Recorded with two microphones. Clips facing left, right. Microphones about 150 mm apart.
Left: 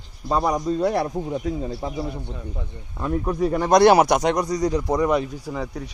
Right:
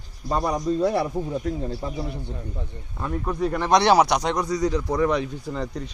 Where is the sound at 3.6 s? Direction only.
45° left (ahead or behind).